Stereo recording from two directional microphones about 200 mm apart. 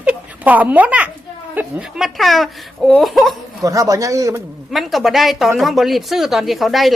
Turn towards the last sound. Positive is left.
turn(degrees=0)  # may be behind; listen again after turning